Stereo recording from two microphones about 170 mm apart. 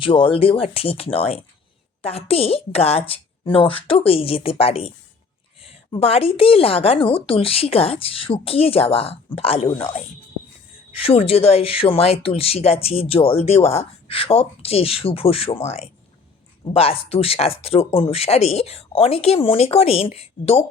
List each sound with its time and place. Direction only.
0.0 s speech: 30° left (ahead or behind)
10.9 s speech: 35° left (ahead or behind)